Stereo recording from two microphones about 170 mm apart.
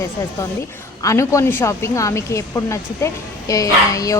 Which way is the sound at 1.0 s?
20° left (ahead or behind).